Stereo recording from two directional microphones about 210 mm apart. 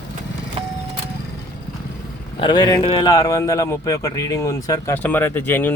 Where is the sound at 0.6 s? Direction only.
30° right (ahead or behind).